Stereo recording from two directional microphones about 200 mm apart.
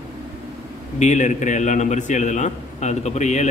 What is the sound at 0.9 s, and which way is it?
A man's voice, 35° left (ahead or behind).